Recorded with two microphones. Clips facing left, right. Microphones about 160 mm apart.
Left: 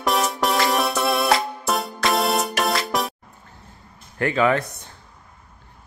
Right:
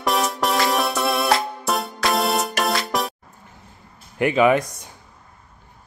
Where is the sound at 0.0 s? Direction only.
Centre (ahead or behind).